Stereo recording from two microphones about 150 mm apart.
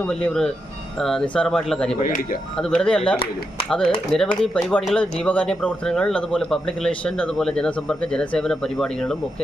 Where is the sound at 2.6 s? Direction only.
5° left (ahead or behind).